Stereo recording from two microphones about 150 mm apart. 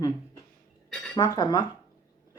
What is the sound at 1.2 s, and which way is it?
Speech, 30° left (ahead or behind).